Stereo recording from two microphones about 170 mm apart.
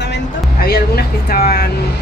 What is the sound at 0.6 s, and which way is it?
Speech, 60° left (ahead or behind).